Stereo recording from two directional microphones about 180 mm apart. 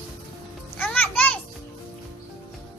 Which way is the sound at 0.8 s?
10° left (ahead or behind).